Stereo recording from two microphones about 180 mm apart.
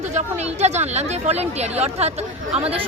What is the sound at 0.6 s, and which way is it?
Speech, 40° right (ahead or behind).